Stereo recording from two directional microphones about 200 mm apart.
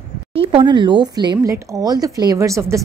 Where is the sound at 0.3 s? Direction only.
30° right (ahead or behind).